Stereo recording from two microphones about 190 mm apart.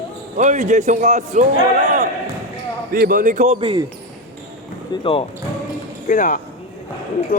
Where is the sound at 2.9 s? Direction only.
50° right (ahead or behind).